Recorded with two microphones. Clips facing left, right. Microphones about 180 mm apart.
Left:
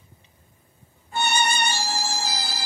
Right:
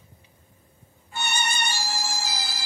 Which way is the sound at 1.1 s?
55° left (ahead or behind).